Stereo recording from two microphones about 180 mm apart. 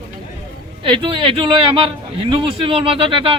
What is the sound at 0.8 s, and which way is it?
Speech, 30° right (ahead or behind).